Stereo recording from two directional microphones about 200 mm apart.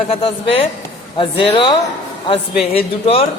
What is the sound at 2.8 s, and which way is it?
Speech, 30° left (ahead or behind).